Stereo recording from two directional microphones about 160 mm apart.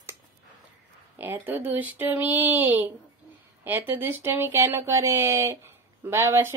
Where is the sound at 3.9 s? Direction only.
15° right (ahead or behind).